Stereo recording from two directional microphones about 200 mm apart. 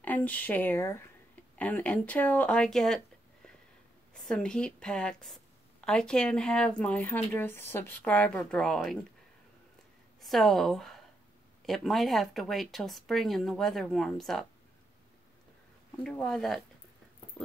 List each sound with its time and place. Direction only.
0.0 s speech: 10° left (ahead or behind)
4.1 s speech: 5° left (ahead or behind)
10.2 s speech: centre (ahead or behind)
16.0 s speech: 5° left (ahead or behind)